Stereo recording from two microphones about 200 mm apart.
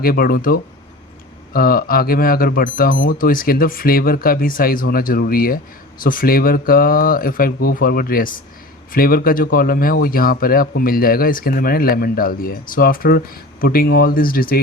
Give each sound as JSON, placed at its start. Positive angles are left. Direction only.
{"t": 0.0, "sound": "speech", "side_deg": 50}